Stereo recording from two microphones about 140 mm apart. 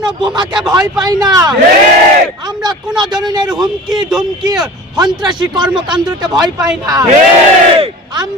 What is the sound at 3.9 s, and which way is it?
Speech, 5° right (ahead or behind).